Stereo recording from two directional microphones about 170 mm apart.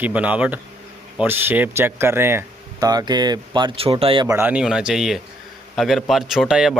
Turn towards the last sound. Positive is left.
turn(degrees=-5)  # may be behind; listen again after turning